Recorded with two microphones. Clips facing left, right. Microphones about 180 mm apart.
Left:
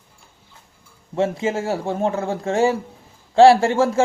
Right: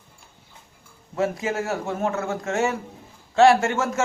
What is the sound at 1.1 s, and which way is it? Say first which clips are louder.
A man's voice: left 3 dB; 25° left (ahead or behind).